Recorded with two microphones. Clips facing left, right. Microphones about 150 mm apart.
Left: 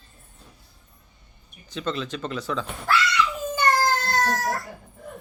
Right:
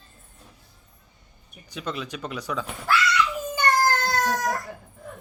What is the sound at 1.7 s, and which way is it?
Speech, 10° right (ahead or behind).